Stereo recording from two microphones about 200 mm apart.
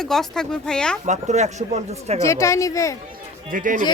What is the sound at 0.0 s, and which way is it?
Speech, centre (ahead or behind).